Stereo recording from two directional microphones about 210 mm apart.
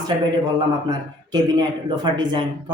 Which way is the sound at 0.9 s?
20° right (ahead or behind).